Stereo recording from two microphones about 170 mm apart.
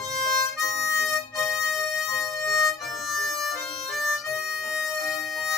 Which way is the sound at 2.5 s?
Centre (ahead or behind).